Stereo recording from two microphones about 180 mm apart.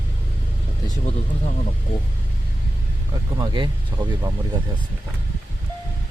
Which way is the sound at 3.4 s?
25° right (ahead or behind).